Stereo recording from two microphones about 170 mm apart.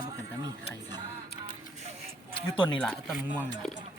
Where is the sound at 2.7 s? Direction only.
5° left (ahead or behind).